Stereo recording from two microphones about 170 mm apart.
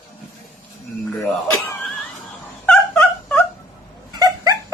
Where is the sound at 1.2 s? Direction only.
10° left (ahead or behind).